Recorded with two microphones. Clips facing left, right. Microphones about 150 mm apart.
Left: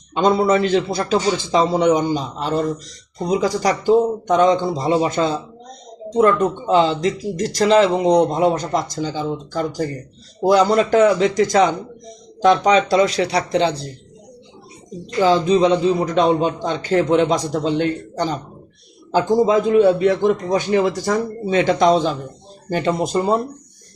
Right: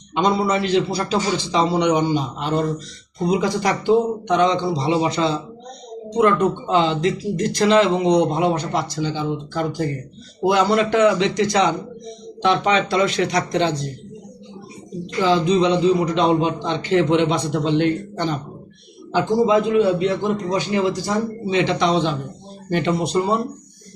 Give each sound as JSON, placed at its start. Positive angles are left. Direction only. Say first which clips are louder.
{"t": 0.3, "sound": "a man's voice", "louder": "left 4 dB", "side_deg": 50}
{"t": 15.0, "sound": "a man's voice", "louder": "left 2 dB", "side_deg": 45}